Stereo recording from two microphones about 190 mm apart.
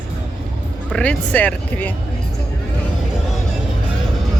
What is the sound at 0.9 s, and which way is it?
Speech, 5° left (ahead or behind).